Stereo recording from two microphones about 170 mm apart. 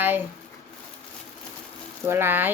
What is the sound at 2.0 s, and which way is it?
Speech, 15° right (ahead or behind).